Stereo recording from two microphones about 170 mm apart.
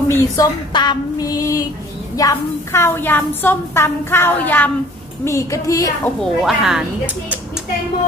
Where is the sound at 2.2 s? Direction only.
20° left (ahead or behind).